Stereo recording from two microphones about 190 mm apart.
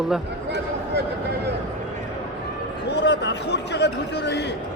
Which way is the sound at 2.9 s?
65° left (ahead or behind).